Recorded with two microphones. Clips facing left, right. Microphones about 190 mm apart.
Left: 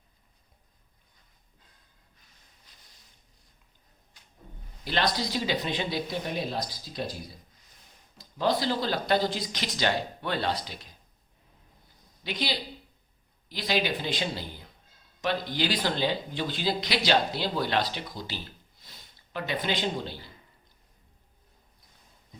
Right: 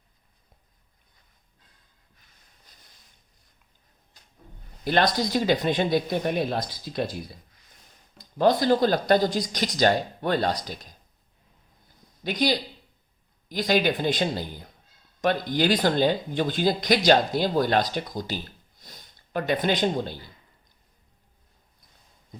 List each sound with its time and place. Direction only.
4.1 s a sound: 35° right (ahead or behind)
4.9 s speech: 50° right (ahead or behind)
8.4 s speech: 50° right (ahead or behind)
12.2 s speech: 45° right (ahead or behind)
18.8 s snort: 45° right (ahead or behind)